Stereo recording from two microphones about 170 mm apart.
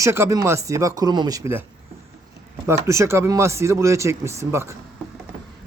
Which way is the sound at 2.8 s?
15° right (ahead or behind).